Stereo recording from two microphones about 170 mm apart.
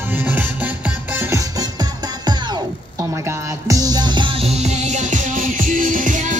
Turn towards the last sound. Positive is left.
turn(degrees=-50)  # may be behind; listen again after turning